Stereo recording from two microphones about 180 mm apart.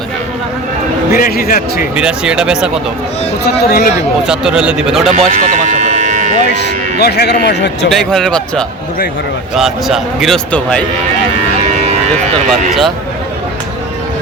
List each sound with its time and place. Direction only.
1.1 s speech: 55° left (ahead or behind)
2.0 s a man's voice: 5° right (ahead or behind)
3.4 s speech: 60° left (ahead or behind)
4.3 s a man's voice: 5° right (ahead or behind)
5.1 s a sound: 45° right (ahead or behind)
7.0 s speech: 65° left (ahead or behind)
7.9 s a man's voice: centre (ahead or behind)
11.6 s a sound: 35° right (ahead or behind)
12.5 s a man's voice: centre (ahead or behind)